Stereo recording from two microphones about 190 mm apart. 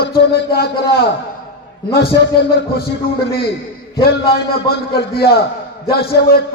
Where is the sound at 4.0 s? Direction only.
55° left (ahead or behind).